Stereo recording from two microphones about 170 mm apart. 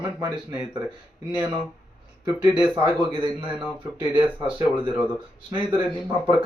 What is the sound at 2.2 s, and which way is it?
Speech, 25° right (ahead or behind).